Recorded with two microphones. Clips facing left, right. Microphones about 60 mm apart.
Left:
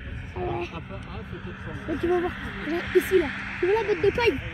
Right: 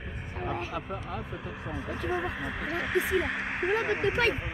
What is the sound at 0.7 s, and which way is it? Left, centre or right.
Speech, right.